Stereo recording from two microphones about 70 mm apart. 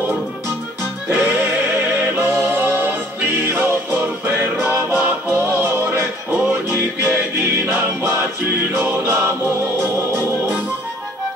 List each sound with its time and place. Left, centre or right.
1.0 s music: right
4.5 s music: centre; by 10.6 s right